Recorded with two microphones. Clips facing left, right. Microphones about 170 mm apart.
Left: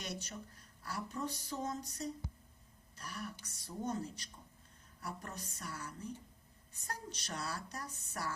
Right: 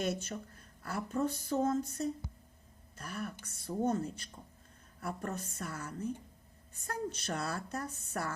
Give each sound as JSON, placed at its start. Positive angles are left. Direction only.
{"t": 0.0, "sound": "speech", "side_deg": -55}
{"t": 3.0, "sound": "speech", "side_deg": -55}